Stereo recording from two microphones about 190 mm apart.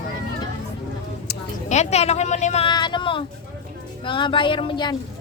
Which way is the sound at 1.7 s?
35° left (ahead or behind).